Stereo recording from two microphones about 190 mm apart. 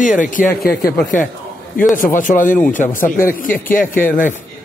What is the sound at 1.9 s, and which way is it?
A man's voice, 45° left (ahead or behind).